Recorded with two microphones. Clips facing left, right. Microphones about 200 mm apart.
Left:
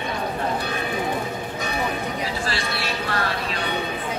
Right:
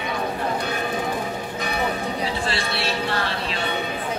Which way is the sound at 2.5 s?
30° right (ahead or behind).